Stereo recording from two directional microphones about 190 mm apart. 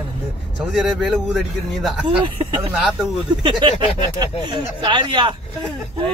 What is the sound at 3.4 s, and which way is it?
A man's voice, 25° right (ahead or behind).